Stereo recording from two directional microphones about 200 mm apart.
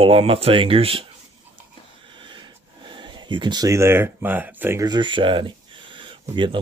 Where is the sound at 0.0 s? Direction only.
30° right (ahead or behind).